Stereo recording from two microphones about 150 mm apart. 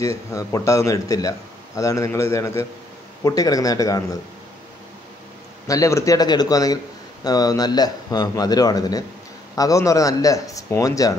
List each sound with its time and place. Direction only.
0.0 s a man's voice: 20° left (ahead or behind)
5.7 s a man's voice: 20° left (ahead or behind)